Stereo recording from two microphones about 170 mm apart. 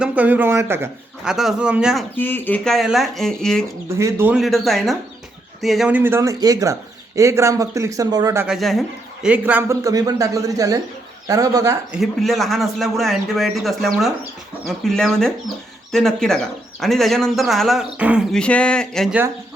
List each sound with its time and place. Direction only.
0.0 s a man's voice: 10° right (ahead or behind)
1.2 s speech: 5° right (ahead or behind)
2.1 s speech: 10° left (ahead or behind)
3.9 s speech: 15° right (ahead or behind)
6.0 s speech: 15° right (ahead or behind)
8.4 s speech: centre (ahead or behind); by 11.8 s 20° right (ahead or behind)
11.9 s speech: centre (ahead or behind)
18.3 s speech: 5° left (ahead or behind)